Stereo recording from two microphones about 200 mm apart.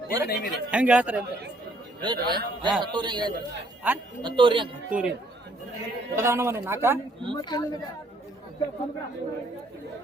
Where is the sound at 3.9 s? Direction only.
5° right (ahead or behind).